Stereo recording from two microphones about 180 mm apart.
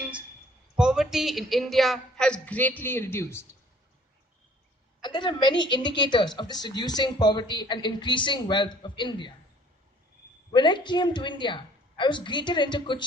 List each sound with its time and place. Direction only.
0.8 s speech: 5° right (ahead or behind); by 3.4 s 15° left (ahead or behind)
5.0 s a woman's voice: 25° left (ahead or behind)
10.5 s a woman's voice: 25° left (ahead or behind)